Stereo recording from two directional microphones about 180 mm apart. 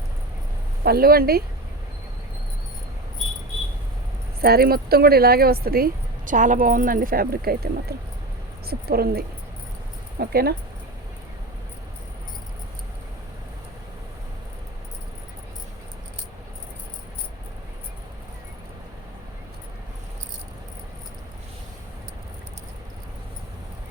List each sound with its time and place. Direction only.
0.9 s speech: 55° right (ahead or behind)
4.4 s speech: 60° right (ahead or behind)